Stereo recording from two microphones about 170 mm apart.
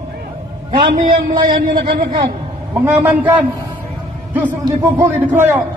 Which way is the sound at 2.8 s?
10° right (ahead or behind).